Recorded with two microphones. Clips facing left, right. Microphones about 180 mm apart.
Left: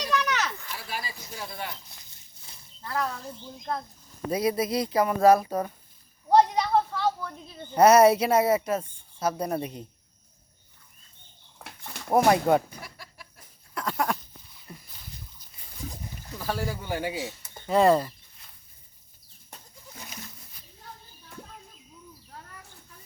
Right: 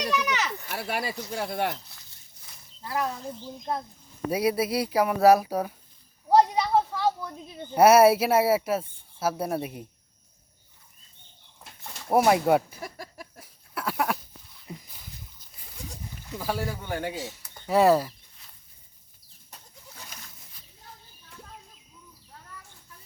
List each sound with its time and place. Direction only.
0.1 s a sound: 5° right (ahead or behind)
0.7 s speech: 65° right (ahead or behind)
2.8 s speech: 10° right (ahead or behind)
4.3 s a woman's voice: 10° right (ahead or behind)
12.1 s speech: 5° right (ahead or behind)
12.8 s a sound: 45° right (ahead or behind)
13.4 s goat: 5° right (ahead or behind)
14.7 s a sound: 15° right (ahead or behind)
16.4 s speech: 5° right (ahead or behind)
17.7 s speech: 5° right (ahead or behind)